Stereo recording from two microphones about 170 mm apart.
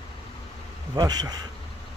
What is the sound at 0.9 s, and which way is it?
Speech, 25° right (ahead or behind).